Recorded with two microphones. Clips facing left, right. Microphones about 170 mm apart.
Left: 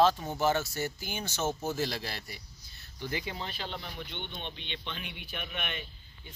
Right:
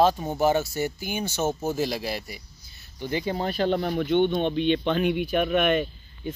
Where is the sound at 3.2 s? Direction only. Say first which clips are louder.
Right 13 dB; 40° right (ahead or behind).